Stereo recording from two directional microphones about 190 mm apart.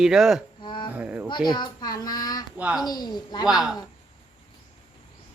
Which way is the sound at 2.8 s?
20° left (ahead or behind).